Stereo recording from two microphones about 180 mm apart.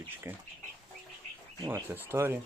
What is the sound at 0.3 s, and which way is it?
Speech, 15° right (ahead or behind).